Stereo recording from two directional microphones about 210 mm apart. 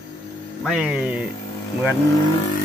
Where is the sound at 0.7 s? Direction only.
5° right (ahead or behind).